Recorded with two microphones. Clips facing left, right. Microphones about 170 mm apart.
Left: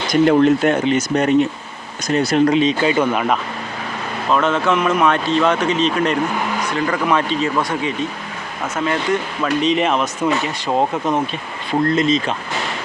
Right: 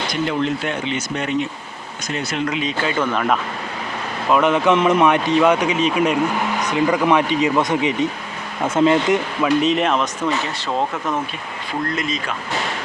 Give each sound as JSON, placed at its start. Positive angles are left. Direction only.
{"t": 0.1, "sound": "speech", "side_deg": 50}
{"t": 2.6, "sound": "speech", "side_deg": 20}
{"t": 4.3, "sound": "speech", "side_deg": -15}
{"t": 9.4, "sound": "speech", "side_deg": -5}
{"t": 10.7, "sound": "speech", "side_deg": 20}